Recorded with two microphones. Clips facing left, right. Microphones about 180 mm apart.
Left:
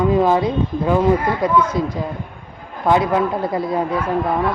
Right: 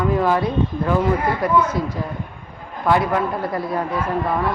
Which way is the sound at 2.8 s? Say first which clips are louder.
Left 2 dB; 20° left (ahead or behind).